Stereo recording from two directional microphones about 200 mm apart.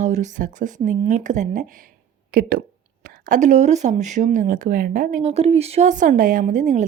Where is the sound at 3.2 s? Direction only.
40° right (ahead or behind).